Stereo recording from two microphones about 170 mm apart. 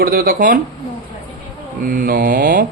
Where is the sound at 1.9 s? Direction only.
60° right (ahead or behind).